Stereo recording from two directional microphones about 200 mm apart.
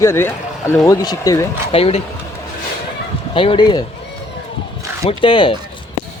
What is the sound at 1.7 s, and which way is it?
Speech, 30° left (ahead or behind).